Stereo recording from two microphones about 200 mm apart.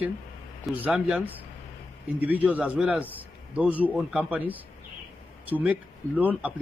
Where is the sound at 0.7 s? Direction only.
5° right (ahead or behind).